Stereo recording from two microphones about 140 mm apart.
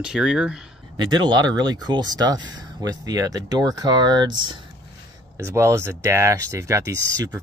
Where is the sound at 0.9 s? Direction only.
30° right (ahead or behind).